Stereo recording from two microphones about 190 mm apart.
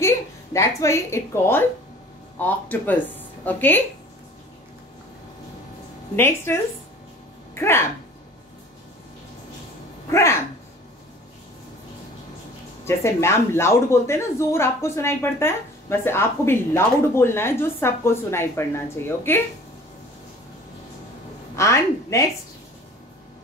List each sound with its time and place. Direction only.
0.0 s a woman's voice: 15° left (ahead or behind)
6.1 s speech: 10° left (ahead or behind)
10.1 s speech: 15° left (ahead or behind)
12.8 s speech: 15° left (ahead or behind)
21.5 s speech: 15° left (ahead or behind)